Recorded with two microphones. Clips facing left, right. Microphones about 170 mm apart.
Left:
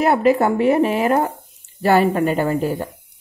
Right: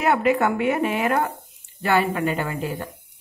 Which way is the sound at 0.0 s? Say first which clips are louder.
Left 4 dB; 35° left (ahead or behind).